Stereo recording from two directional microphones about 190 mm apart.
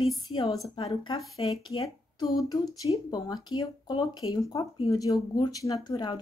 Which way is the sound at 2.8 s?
20° left (ahead or behind).